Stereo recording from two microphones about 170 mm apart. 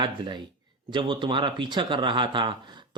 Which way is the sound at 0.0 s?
25° right (ahead or behind).